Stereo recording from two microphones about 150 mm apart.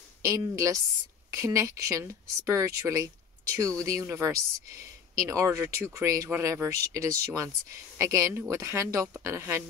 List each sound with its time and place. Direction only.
0.2 s speech: 20° right (ahead or behind)